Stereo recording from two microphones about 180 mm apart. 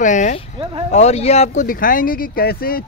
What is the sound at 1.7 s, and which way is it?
Speech, 50° left (ahead or behind).